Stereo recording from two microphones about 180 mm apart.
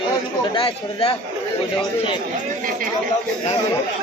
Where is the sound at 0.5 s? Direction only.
35° left (ahead or behind).